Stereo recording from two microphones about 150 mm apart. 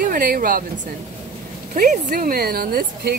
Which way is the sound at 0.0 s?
70° right (ahead or behind).